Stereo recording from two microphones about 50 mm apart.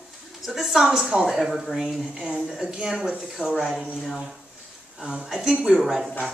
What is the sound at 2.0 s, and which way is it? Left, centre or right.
Speech, centre.